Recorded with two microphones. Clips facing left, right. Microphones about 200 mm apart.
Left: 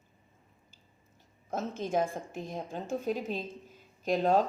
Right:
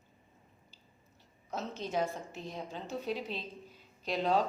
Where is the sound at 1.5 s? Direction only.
50° left (ahead or behind).